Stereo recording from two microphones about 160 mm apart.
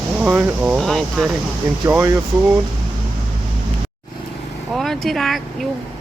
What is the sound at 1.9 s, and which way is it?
Speech, 15° right (ahead or behind).